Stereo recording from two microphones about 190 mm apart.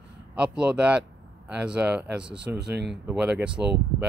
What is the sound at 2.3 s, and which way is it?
Speech, 60° right (ahead or behind).